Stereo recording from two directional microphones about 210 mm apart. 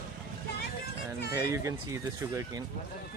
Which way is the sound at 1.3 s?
15° right (ahead or behind).